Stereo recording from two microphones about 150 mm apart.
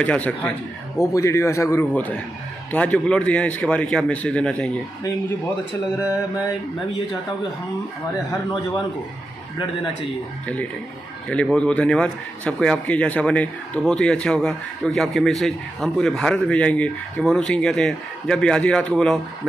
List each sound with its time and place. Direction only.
0.0 s a man's voice: 10° left (ahead or behind)
10.4 s a man's voice: 10° left (ahead or behind)